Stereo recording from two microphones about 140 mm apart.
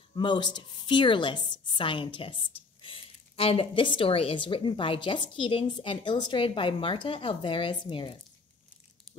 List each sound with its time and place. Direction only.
0.1 s a woman's voice: 35° left (ahead or behind)